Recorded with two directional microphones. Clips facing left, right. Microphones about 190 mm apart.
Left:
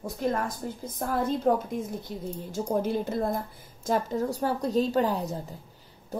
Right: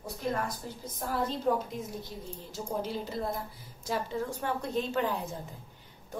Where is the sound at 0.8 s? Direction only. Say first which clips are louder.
Left 4 dB; 50° left (ahead or behind).